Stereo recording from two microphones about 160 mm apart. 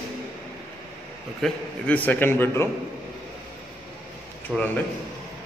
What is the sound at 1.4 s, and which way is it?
A man's voice, 10° left (ahead or behind).